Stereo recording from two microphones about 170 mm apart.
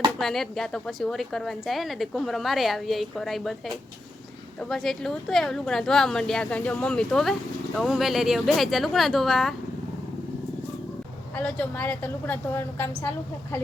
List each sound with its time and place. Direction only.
0.2 s a woman's voice: centre (ahead or behind)
4.7 s a woman's voice: 5° left (ahead or behind)
11.3 s a woman's voice: 10° left (ahead or behind)